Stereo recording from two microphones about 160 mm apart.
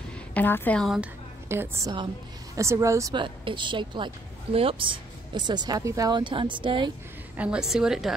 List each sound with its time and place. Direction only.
0.3 s a woman's voice: 10° left (ahead or behind)
0.8 s a woman's voice: centre (ahead or behind)
1.5 s a woman's voice: 15° right (ahead or behind); by 6.9 s 30° right (ahead or behind)
7.3 s a woman's voice: 5° right (ahead or behind)